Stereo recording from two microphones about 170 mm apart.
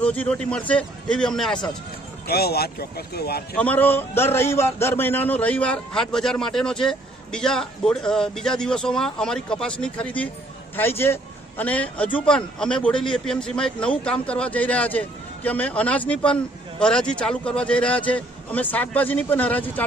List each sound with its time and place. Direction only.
0.0 s a man's voice: 10° left (ahead or behind)
2.2 s speech: 65° left (ahead or behind)
3.5 s a man's voice: 10° left (ahead or behind)